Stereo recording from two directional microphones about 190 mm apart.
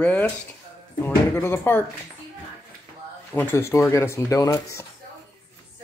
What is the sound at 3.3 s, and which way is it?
Speech, 10° left (ahead or behind).